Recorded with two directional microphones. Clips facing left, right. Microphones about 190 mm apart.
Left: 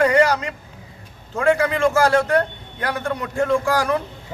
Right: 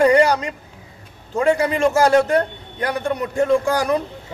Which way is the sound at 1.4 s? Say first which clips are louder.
Right 1 dB; 20° right (ahead or behind).